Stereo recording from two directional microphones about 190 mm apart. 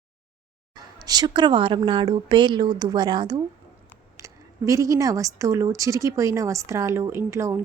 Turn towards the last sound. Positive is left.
turn(degrees=-15)  # may be behind; listen again after turning